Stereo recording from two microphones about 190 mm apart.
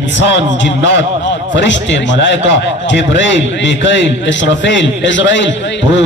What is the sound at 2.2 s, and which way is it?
A man's voice, 70° left (ahead or behind).